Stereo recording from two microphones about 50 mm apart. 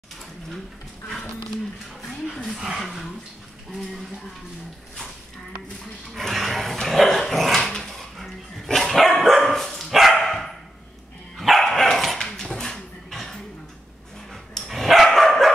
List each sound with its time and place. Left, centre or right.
2.0 s a sound: centre
2.6 s speech: centre
6.1 s dog: centre